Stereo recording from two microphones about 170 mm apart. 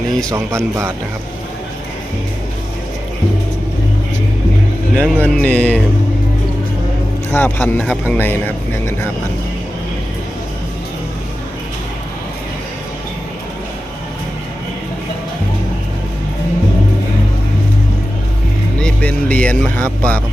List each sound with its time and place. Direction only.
0.3 s a man's voice: 15° right (ahead or behind)
4.9 s speech: 10° left (ahead or behind)
7.3 s speech: 10° left (ahead or behind)
18.8 s speech: 5° left (ahead or behind)